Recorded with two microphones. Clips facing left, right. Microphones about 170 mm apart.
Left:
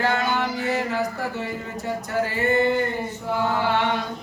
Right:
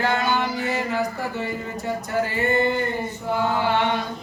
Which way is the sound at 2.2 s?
15° right (ahead or behind).